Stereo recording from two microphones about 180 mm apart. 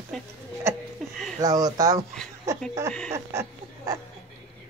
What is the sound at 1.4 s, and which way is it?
Speech, 20° right (ahead or behind).